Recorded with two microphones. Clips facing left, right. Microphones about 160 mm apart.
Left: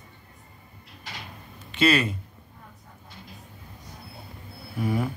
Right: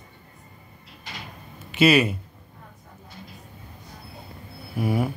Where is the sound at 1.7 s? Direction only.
10° right (ahead or behind).